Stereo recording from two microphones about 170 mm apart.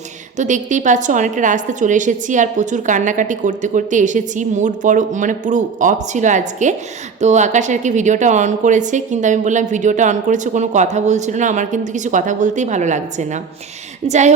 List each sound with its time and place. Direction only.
0.3 s a woman's voice: 45° right (ahead or behind)